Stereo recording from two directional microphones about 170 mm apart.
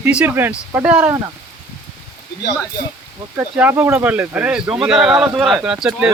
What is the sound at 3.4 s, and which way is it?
Speech, 10° right (ahead or behind).